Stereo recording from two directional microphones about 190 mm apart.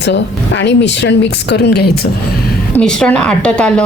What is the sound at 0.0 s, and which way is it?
Speech, 70° left (ahead or behind).